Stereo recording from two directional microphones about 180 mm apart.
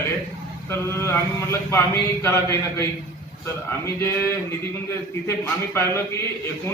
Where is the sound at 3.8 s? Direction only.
15° left (ahead or behind).